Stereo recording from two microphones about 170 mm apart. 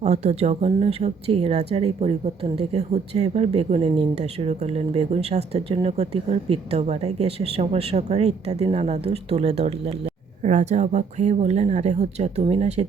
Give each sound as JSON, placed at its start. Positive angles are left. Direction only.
{"t": 0.0, "sound": "speech", "side_deg": -40}